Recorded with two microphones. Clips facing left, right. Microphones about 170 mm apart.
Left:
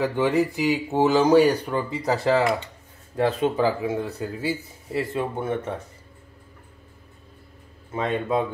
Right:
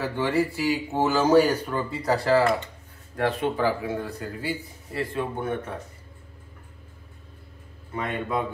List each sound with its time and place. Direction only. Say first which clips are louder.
0.0 s speech: left 3 dB; 20° left (ahead or behind)
7.9 s speech: left 4 dB; 25° left (ahead or behind)